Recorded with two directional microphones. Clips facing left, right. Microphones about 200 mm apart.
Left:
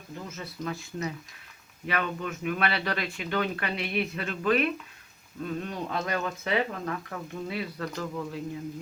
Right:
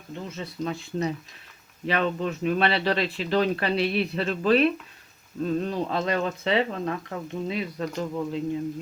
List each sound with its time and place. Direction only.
0.1 s speech: 25° right (ahead or behind)